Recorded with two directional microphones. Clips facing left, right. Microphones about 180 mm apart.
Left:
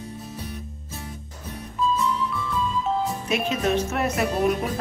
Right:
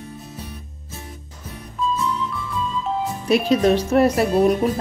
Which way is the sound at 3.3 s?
35° right (ahead or behind).